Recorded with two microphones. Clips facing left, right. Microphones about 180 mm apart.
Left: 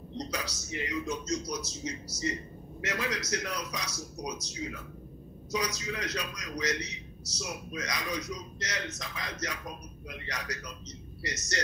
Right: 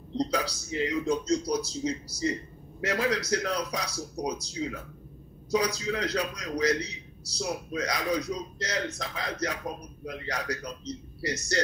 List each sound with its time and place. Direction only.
0.2 s a man's voice: 30° right (ahead or behind)